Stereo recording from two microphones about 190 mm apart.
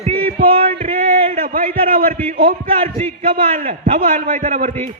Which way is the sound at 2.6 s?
30° right (ahead or behind).